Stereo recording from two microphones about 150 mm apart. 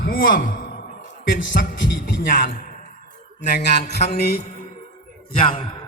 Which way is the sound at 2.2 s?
70° left (ahead or behind).